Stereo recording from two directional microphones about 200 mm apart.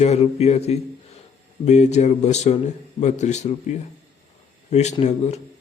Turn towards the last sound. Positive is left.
turn(degrees=35)  # may be behind; listen again after turning